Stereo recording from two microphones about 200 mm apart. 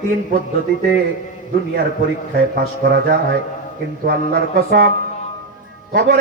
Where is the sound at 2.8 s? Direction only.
50° right (ahead or behind).